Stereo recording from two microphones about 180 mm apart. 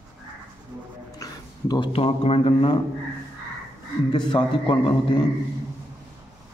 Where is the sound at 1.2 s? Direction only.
20° left (ahead or behind).